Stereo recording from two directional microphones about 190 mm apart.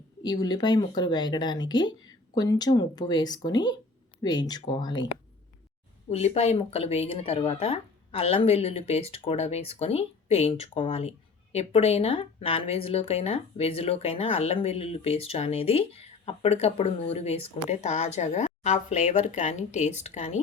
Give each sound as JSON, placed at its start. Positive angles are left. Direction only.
{"t": 0.2, "sound": "speech", "side_deg": 20}
{"t": 6.1, "sound": "a woman's voice", "side_deg": 35}